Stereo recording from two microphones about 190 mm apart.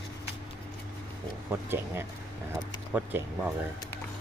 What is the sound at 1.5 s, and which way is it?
Speech, 10° right (ahead or behind).